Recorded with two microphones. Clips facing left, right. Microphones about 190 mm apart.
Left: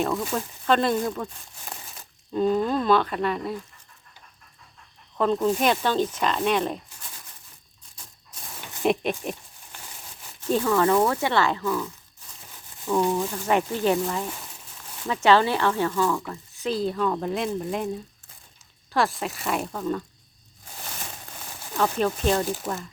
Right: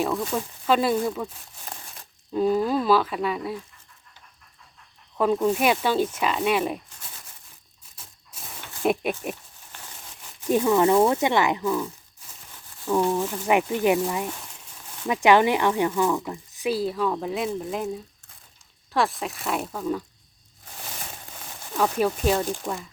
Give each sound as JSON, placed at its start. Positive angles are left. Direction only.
{"t": 0.0, "sound": "speech", "side_deg": 0}
{"t": 2.3, "sound": "speech", "side_deg": -5}
{"t": 5.1, "sound": "speech", "side_deg": -10}
{"t": 8.8, "sound": "speech", "side_deg": -5}
{"t": 9.7, "sound": "a sound", "side_deg": 10}
{"t": 10.4, "sound": "speech", "side_deg": -15}
{"t": 12.9, "sound": "speech", "side_deg": -5}
{"t": 15.0, "sound": "speech", "side_deg": -15}
{"t": 21.7, "sound": "speech", "side_deg": -5}